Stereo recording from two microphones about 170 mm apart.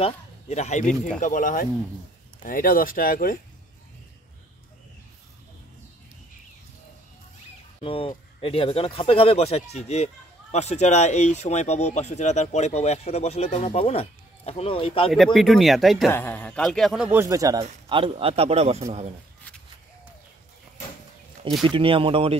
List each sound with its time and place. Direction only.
0.0 s speech: 40° left (ahead or behind); by 3.3 s 60° left (ahead or behind)
7.8 s speech: 35° left (ahead or behind)
15.0 s a man's voice: centre (ahead or behind)
16.1 s a man's voice: 10° left (ahead or behind); by 17.6 s 20° right (ahead or behind)
17.8 s a man's voice: 30° right (ahead or behind)
21.6 s a man's voice: 30° right (ahead or behind)